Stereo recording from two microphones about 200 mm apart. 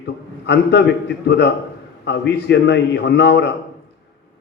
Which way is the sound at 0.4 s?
60° left (ahead or behind).